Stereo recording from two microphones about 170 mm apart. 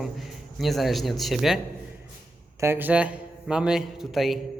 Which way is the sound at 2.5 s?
15° right (ahead or behind).